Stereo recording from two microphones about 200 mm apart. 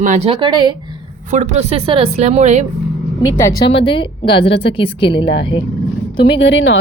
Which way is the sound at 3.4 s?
15° left (ahead or behind).